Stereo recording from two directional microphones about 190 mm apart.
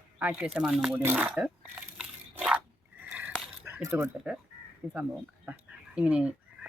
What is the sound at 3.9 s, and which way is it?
Speech, 5° right (ahead or behind).